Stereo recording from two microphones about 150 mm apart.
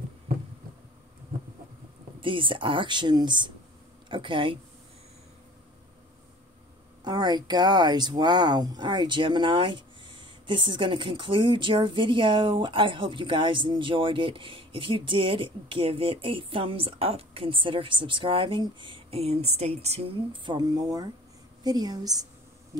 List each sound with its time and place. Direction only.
2.1 s speech: 35° right (ahead or behind)
7.1 s a woman's voice: 30° right (ahead or behind)